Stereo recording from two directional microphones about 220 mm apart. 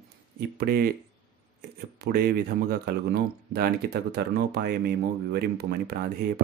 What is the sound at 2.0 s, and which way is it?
Speech, 45° right (ahead or behind).